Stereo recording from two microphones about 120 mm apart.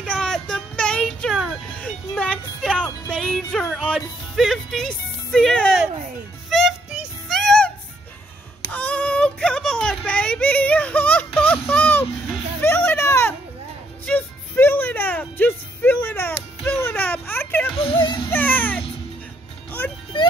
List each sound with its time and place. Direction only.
0.0 s child singing: 10° left (ahead or behind)
1.3 s music: 5° right (ahead or behind)
1.8 s music: 5° left (ahead or behind)
4.4 s speech: centre (ahead or behind)
6.5 s music: 5° right (ahead or behind)
8.7 s a sound: 10° left (ahead or behind)
12.5 s music: 15° left (ahead or behind)
16.6 s a sound: 15° left (ahead or behind)
17.7 s a sound: 45° left (ahead or behind)
18.3 s music: 15° left (ahead or behind)